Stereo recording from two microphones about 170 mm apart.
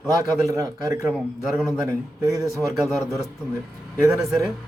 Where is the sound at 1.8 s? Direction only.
20° right (ahead or behind).